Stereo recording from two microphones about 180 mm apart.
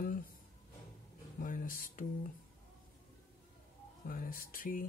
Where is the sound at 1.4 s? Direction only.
50° left (ahead or behind).